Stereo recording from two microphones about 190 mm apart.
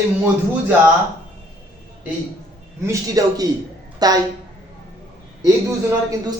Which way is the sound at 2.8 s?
15° right (ahead or behind).